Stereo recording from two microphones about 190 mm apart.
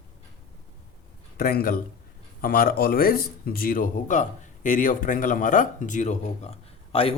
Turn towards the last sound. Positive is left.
turn(degrees=30)  # may be behind; listen again after turning